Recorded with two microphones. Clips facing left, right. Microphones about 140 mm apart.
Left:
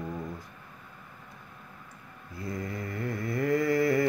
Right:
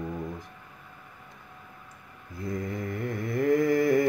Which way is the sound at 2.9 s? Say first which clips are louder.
Even; 20° right (ahead or behind).